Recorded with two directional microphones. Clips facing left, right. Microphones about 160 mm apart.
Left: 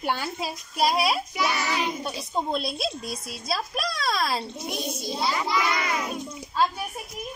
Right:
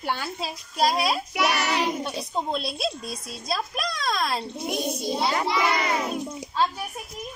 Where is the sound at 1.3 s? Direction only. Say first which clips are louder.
Right 2 dB; 70° right (ahead or behind).